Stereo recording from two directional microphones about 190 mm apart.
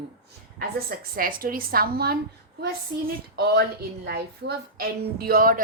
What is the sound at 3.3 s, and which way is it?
A woman's voice, 55° right (ahead or behind).